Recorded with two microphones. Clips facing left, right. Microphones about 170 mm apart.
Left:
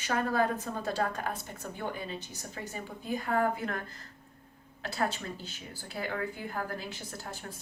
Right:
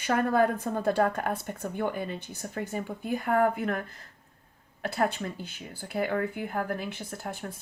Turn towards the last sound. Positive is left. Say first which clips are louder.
# right 5 dB
turn(degrees=-55)  # may be behind; listen again after turning